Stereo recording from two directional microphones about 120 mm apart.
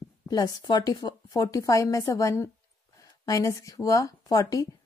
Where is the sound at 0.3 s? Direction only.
35° left (ahead or behind).